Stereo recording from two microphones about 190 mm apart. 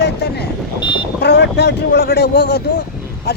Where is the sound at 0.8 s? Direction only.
25° left (ahead or behind).